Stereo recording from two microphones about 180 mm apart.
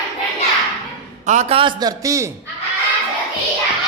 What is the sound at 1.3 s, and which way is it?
A man's voice, 35° right (ahead or behind).